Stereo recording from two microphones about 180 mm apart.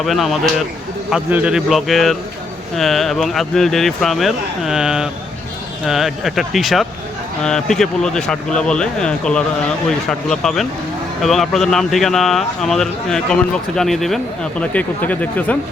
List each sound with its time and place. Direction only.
0.0 s speech: centre (ahead or behind)